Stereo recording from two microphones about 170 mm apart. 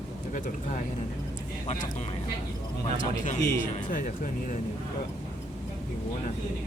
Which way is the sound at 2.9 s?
50° left (ahead or behind).